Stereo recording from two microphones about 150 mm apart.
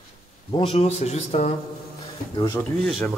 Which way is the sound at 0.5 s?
40° left (ahead or behind).